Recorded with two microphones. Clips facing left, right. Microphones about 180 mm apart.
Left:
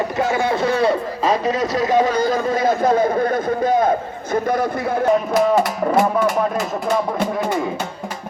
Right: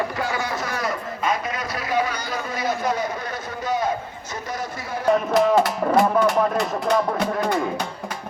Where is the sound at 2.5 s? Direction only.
50° left (ahead or behind).